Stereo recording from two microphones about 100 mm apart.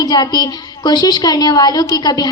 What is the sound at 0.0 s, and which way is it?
A woman's voice, 45° left (ahead or behind).